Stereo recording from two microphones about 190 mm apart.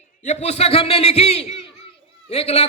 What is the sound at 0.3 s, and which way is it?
Speech, 35° left (ahead or behind).